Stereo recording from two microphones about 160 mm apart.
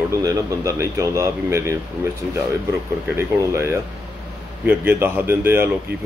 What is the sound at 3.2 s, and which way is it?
Speech, 15° right (ahead or behind).